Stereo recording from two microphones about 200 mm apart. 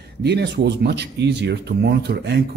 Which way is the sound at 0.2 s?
55° right (ahead or behind).